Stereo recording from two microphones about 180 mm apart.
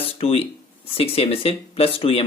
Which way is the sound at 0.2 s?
30° left (ahead or behind).